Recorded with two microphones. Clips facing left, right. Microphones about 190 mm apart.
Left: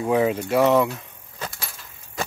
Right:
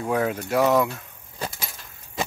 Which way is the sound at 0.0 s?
5° left (ahead or behind).